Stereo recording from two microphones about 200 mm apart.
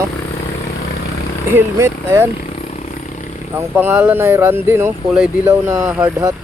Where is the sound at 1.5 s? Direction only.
15° right (ahead or behind).